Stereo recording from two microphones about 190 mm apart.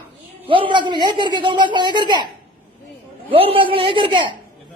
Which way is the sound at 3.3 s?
30° right (ahead or behind).